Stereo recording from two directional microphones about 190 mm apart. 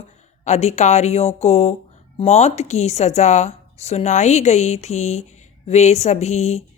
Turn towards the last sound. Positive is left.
turn(degrees=35)  # may be behind; listen again after turning